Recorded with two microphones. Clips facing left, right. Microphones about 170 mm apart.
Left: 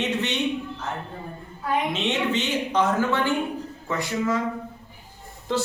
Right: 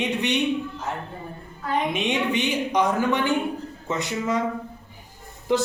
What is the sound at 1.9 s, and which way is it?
A man's voice, 15° right (ahead or behind).